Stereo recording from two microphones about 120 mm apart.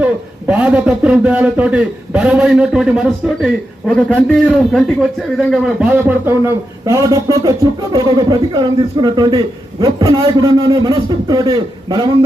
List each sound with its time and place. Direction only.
0.0 s a man's voice: 10° right (ahead or behind)
5.9 s a man's voice: 15° right (ahead or behind); by 12.1 s 35° right (ahead or behind)